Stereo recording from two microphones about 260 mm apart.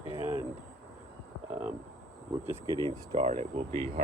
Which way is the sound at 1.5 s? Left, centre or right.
Centre.